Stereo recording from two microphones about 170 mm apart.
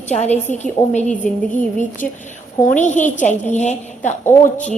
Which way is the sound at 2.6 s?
50° left (ahead or behind).